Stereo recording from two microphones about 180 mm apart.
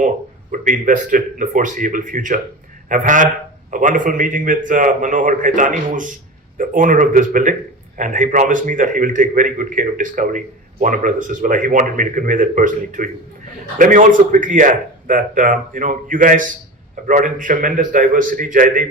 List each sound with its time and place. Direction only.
0.5 s a man's voice: 45° right (ahead or behind)